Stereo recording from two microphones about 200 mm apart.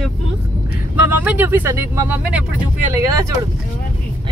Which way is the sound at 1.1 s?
10° right (ahead or behind).